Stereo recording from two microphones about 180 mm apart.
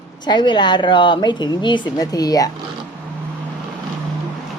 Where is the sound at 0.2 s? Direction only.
25° left (ahead or behind).